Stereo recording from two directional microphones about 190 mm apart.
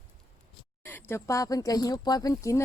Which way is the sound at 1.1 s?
15° left (ahead or behind).